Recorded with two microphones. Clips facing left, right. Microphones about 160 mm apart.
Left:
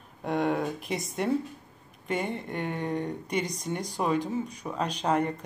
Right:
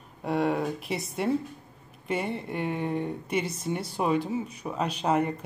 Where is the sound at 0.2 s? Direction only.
Centre (ahead or behind).